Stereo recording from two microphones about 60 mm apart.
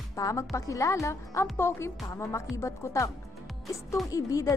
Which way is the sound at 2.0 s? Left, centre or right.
Left.